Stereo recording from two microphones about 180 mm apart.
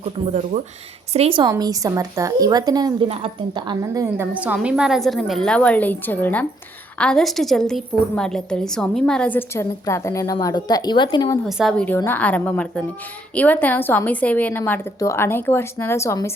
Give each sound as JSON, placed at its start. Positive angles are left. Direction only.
{"t": 0.0, "sound": "a woman's voice", "side_deg": -40}
{"t": 11.4, "sound": "a woman's voice", "side_deg": 0}
{"t": 11.9, "sound": "a woman's voice", "side_deg": 10}